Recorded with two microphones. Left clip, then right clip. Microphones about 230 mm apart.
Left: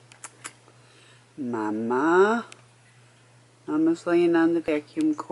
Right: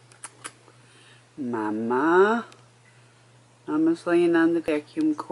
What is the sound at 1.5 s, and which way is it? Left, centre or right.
Speech, centre.